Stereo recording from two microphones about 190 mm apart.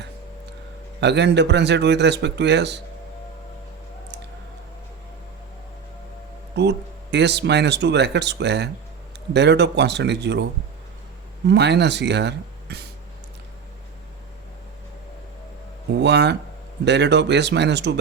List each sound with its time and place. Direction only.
1.0 s speech: 65° right (ahead or behind)
6.6 s speech: 65° right (ahead or behind)
15.9 s speech: 65° right (ahead or behind)